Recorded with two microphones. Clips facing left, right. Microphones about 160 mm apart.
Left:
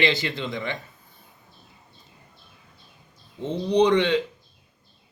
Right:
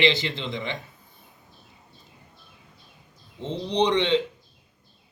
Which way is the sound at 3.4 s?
20° right (ahead or behind).